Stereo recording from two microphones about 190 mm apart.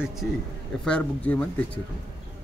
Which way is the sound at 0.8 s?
5° left (ahead or behind).